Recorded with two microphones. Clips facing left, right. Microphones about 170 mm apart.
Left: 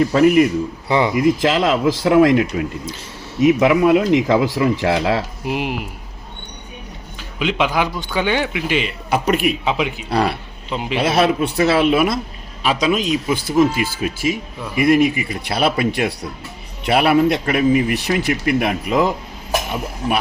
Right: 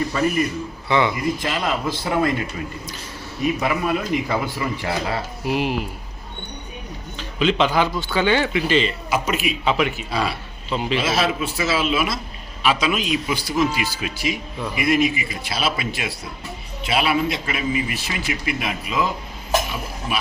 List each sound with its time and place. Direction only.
0.1 s a man's voice: 80° left
0.9 s speech: 35° left (ahead or behind)
1.1 s speech: 90° left
5.5 s a man's voice: 15° left (ahead or behind)
7.2 s a man's voice: 10° left (ahead or behind)
9.0 s a man's voice: 60° left (ahead or behind)
9.6 s a man's voice: 15° left (ahead or behind)
10.1 s a man's voice: 65° left (ahead or behind)
10.7 s a man's voice: 15° left (ahead or behind)
10.9 s a man's voice: 60° left (ahead or behind)
12.6 s a man's voice: 40° left (ahead or behind); by 19.1 s 65° left (ahead or behind)